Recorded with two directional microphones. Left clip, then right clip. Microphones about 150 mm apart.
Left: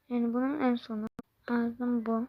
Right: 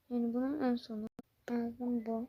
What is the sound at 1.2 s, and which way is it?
Speech, 15° left (ahead or behind).